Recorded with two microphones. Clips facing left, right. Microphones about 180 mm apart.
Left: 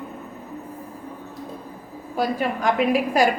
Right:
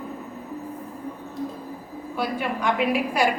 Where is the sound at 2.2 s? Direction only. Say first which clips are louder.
Left 3 dB; 40° left (ahead or behind).